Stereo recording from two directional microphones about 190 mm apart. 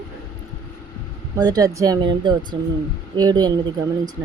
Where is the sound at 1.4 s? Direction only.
20° right (ahead or behind).